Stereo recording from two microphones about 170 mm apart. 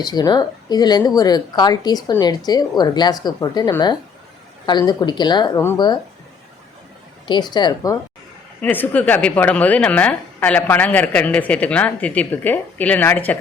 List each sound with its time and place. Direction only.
0.0 s a woman's voice: 25° left (ahead or behind)
7.3 s a woman's voice: 25° left (ahead or behind)
8.6 s a woman's voice: 10° left (ahead or behind)